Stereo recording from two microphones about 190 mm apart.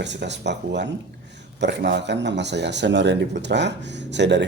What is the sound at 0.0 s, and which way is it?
Speech, 65° right (ahead or behind).